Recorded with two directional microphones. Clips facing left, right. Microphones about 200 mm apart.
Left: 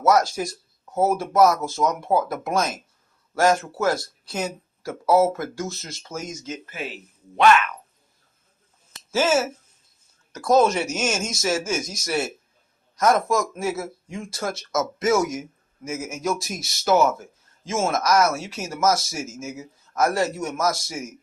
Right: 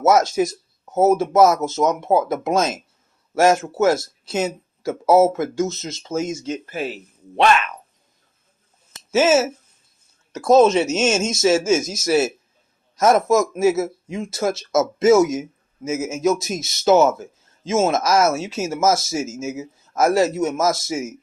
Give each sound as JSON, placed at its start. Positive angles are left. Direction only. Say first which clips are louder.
{"t": 0.0, "sound": "speech", "louder": "right 4 dB", "side_deg": -25}
{"t": 8.9, "sound": "speech", "louder": "right 5 dB", "side_deg": -20}